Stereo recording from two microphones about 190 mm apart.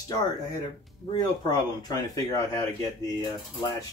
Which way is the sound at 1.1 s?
20° left (ahead or behind).